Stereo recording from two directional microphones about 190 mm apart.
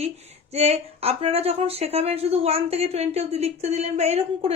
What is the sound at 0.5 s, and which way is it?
Speech, 35° right (ahead or behind).